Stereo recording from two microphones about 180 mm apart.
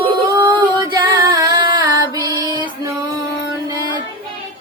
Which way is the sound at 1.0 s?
25° right (ahead or behind).